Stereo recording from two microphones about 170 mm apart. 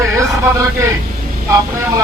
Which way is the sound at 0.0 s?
15° right (ahead or behind).